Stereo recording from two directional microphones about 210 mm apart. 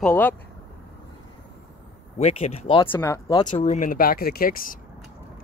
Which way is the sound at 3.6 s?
35° left (ahead or behind).